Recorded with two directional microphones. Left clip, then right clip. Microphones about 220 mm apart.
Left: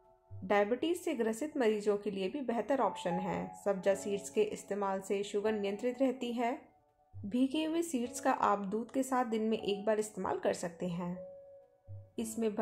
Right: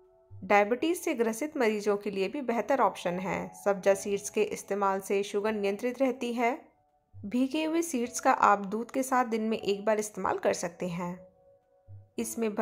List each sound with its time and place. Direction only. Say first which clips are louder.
0.5 s a woman's voice: right 6 dB; 15° right (ahead or behind)
12.2 s a woman's voice: right 4 dB; 15° right (ahead or behind)